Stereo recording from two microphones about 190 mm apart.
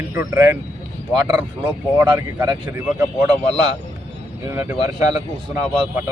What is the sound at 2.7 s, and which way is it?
Speech, 5° right (ahead or behind).